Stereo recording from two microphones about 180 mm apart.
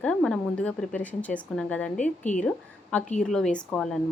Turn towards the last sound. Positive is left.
turn(degrees=5)  # may be behind; listen again after turning